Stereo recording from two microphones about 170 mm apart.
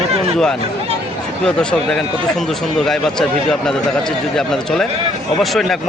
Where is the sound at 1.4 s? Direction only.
5° left (ahead or behind).